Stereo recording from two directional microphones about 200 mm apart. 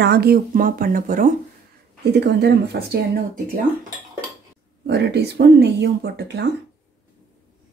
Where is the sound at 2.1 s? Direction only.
55° right (ahead or behind).